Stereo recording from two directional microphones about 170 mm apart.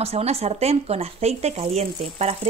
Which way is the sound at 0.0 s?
35° right (ahead or behind).